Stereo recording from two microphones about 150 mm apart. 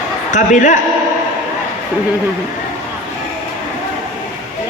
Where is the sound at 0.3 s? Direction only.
55° left (ahead or behind).